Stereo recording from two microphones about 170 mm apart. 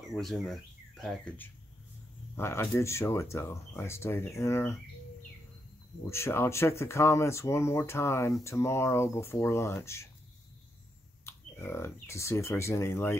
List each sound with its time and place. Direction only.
0.1 s speech: centre (ahead or behind)
6.0 s speech: 15° left (ahead or behind)
11.2 s speech: 15° left (ahead or behind)